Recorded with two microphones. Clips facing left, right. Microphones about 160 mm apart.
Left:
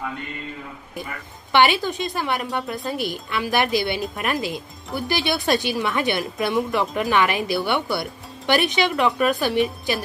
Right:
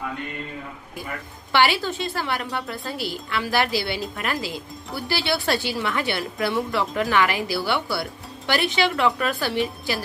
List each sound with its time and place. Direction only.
1.5 s a woman's voice: 20° left (ahead or behind)